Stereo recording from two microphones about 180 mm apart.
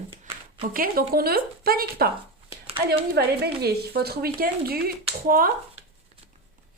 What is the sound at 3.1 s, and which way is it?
Speech, 60° right (ahead or behind).